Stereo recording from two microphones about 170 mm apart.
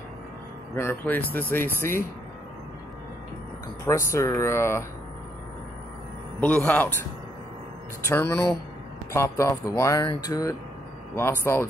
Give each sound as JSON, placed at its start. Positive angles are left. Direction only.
{"t": 0.7, "sound": "speech", "side_deg": 10}
{"t": 3.8, "sound": "speech", "side_deg": 15}
{"t": 6.4, "sound": "speech", "side_deg": 10}
{"t": 8.1, "sound": "speech", "side_deg": 15}